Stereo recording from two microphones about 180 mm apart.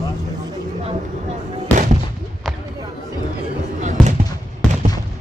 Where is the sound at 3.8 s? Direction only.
40° right (ahead or behind).